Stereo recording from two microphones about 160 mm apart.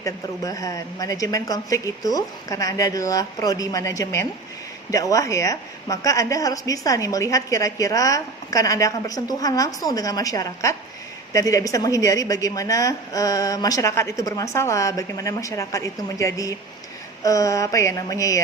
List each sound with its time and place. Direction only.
0.0 s a woman's voice: 20° left (ahead or behind)